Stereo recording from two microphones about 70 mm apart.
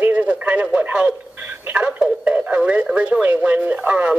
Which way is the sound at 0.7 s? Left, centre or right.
Right.